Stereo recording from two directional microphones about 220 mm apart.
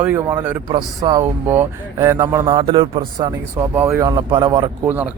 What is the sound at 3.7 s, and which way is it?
Speech, 10° right (ahead or behind).